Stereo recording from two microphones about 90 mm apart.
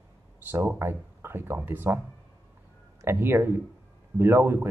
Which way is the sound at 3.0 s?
25° right (ahead or behind).